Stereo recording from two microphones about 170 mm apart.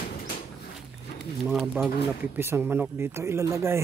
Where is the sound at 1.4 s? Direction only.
5° right (ahead or behind).